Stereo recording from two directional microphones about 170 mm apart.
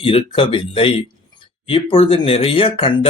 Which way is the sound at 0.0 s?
35° left (ahead or behind).